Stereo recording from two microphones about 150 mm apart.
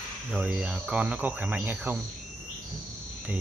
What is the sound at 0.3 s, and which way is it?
Speech, 5° right (ahead or behind).